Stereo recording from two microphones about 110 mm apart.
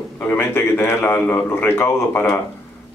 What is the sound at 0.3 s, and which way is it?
A man's voice, 20° left (ahead or behind).